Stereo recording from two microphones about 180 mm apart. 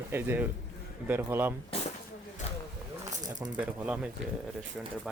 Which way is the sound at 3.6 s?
5° right (ahead or behind).